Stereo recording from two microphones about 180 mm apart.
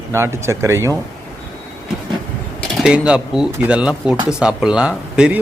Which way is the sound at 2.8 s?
5° right (ahead or behind).